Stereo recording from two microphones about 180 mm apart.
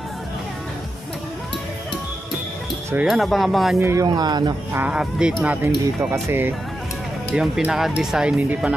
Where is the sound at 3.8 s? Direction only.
15° right (ahead or behind).